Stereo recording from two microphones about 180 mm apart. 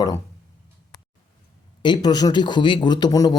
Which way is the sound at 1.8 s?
25° left (ahead or behind).